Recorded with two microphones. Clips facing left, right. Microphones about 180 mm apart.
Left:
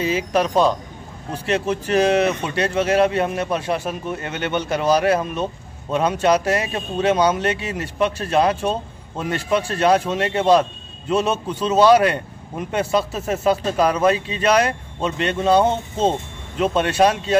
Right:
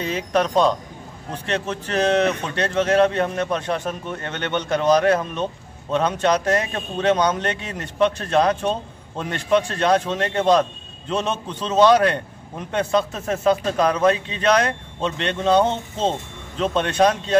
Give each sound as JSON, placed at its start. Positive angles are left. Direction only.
{"t": 0.0, "sound": "speech", "side_deg": 5}